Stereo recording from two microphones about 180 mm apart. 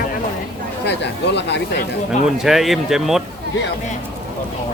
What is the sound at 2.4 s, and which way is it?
Speech, centre (ahead or behind).